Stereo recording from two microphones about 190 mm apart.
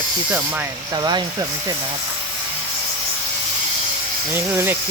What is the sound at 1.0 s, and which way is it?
Speech, 20° right (ahead or behind).